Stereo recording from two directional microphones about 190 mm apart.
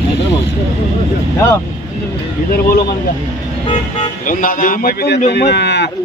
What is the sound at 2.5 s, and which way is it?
Speech, 50° left (ahead or behind).